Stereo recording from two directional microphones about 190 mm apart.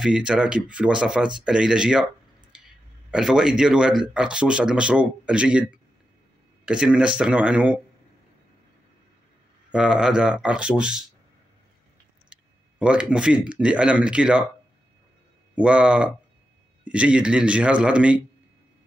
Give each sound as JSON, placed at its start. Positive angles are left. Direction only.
{"t": 0.0, "sound": "speech", "side_deg": -5}
{"t": 3.1, "sound": "speech", "side_deg": -5}
{"t": 9.7, "sound": "speech", "side_deg": -5}
{"t": 12.3, "sound": "speech", "side_deg": -5}
{"t": 15.5, "sound": "speech", "side_deg": -5}